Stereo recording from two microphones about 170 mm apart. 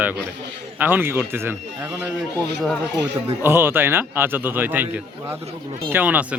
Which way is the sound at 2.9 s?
15° right (ahead or behind).